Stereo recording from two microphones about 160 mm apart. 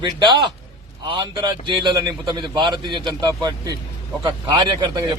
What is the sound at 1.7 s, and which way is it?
A man's voice, 30° right (ahead or behind).